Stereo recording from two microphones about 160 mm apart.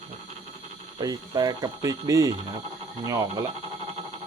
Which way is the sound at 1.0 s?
25° right (ahead or behind).